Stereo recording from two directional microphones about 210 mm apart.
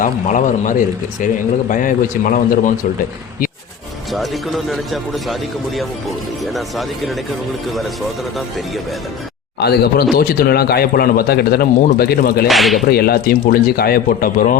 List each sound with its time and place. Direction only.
0.0 s speech: 40° left (ahead or behind)
4.1 s speech: centre (ahead or behind)
8.4 s speech: centre (ahead or behind)
9.6 s a man's voice: 50° left (ahead or behind)
12.5 s speech: centre (ahead or behind)
12.9 s a man's voice: 45° left (ahead or behind)